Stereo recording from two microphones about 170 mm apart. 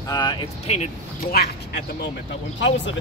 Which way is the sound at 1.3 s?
75° left (ahead or behind).